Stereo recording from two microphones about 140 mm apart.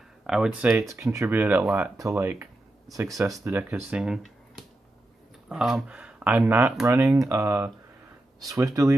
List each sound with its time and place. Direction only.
0.3 s speech: 5° right (ahead or behind)
2.0 s speech: 20° right (ahead or behind)